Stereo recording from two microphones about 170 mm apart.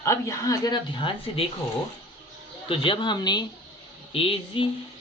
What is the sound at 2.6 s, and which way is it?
Speech, 30° left (ahead or behind).